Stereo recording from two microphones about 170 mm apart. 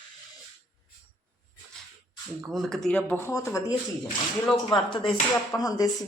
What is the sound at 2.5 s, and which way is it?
Speech, centre (ahead or behind).